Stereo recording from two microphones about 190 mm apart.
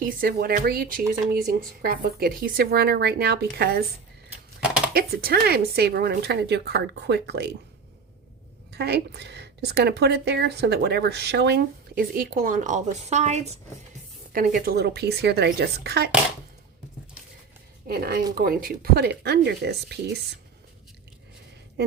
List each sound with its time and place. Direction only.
0.0 s speech: 50° right (ahead or behind)
4.3 s typewriter: 5° right (ahead or behind)
4.9 s speech: 55° right (ahead or behind)
8.7 s speech: 60° right (ahead or behind); by 13.6 s 35° right (ahead or behind)
14.3 s speech: 45° right (ahead or behind)
17.8 s speech: 55° right (ahead or behind)